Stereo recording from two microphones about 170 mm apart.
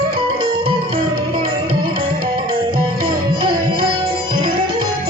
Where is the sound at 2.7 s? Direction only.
30° right (ahead or behind).